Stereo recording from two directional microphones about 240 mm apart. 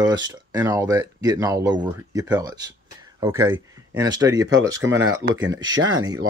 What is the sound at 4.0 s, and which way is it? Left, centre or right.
Speech, centre.